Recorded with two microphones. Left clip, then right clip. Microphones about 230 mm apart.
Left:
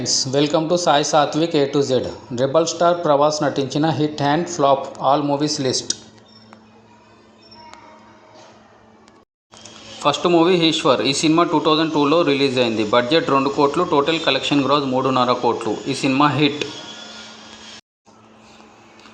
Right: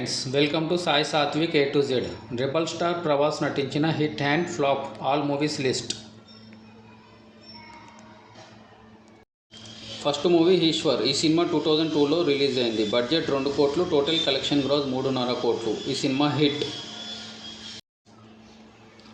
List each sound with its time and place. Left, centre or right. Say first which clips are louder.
0.0 s speech: left 6 dB; left
10.0 s speech: left 6 dB; centre